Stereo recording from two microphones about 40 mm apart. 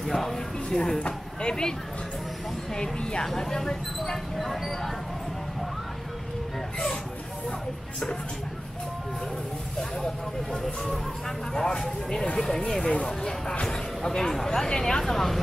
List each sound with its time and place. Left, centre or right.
0.0 s speech: centre
0.9 s speech: left; by 4.9 s centre
10.8 s speech: centre